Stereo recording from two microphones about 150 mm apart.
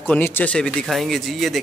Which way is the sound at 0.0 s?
15° left (ahead or behind).